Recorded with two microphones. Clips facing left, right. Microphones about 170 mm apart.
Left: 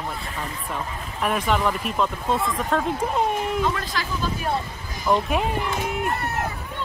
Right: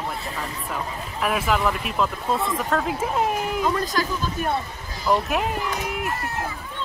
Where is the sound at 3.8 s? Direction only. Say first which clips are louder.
Right 5 dB; 45° right (ahead or behind).